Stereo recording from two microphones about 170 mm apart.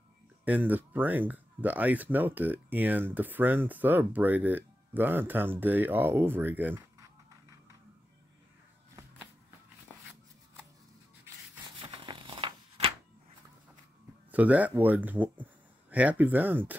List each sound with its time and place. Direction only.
0.5 s speech: 10° right (ahead or behind)
11.8 s a sound: 30° right (ahead or behind)
14.3 s speech: 10° right (ahead or behind)